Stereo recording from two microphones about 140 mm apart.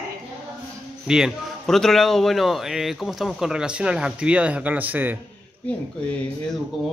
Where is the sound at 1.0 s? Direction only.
5° right (ahead or behind).